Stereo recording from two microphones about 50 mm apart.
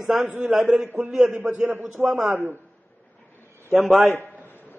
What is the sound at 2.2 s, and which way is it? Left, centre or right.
Speech, right.